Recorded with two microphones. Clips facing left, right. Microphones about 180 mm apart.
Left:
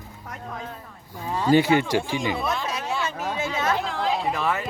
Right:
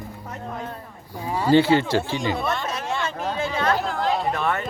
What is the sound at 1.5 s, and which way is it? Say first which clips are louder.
Speech: right 2 dB; 15° left (ahead or behind).